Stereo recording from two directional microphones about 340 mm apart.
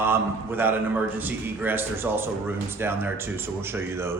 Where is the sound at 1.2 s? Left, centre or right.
Centre.